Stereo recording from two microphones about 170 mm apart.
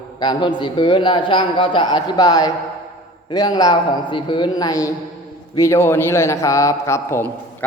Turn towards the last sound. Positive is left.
turn(degrees=15)  # may be behind; listen again after turning